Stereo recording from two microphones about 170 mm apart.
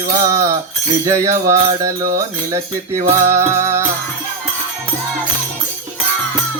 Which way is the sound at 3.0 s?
15° right (ahead or behind).